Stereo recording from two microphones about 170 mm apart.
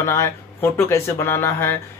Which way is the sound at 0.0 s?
15° left (ahead or behind).